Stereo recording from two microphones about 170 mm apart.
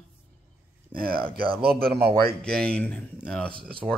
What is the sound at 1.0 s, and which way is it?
A man's voice, 60° right (ahead or behind).